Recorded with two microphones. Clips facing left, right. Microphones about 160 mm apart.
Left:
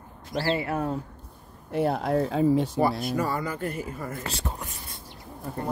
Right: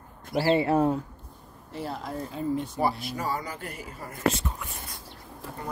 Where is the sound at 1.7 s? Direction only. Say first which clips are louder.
Left 10 dB; 60° left (ahead or behind); by 2.8 s 90° left.